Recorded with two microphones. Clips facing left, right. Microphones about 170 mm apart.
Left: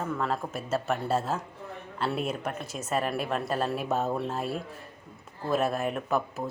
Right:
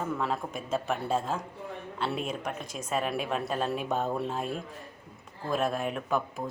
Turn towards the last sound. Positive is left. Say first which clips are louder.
# left 1 dB
turn(degrees=5)  # may be behind; listen again after turning